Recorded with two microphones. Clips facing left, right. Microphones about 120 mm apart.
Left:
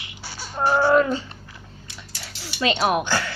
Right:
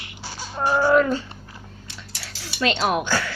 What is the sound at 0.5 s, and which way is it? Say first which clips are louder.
Speech: left 1 dB; 15° left (ahead or behind).